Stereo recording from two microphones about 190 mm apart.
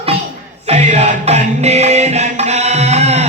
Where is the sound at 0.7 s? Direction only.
35° right (ahead or behind).